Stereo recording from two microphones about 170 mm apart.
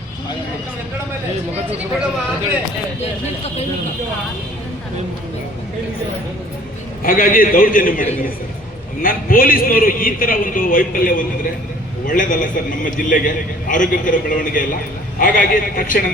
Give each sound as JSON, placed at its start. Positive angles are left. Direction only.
{"t": 7.0, "sound": "a man's voice", "side_deg": 55}